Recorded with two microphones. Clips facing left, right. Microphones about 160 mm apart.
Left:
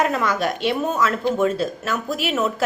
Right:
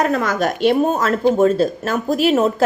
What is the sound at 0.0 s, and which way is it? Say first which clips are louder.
A woman's voice: right 3 dB; 40° right (ahead or behind).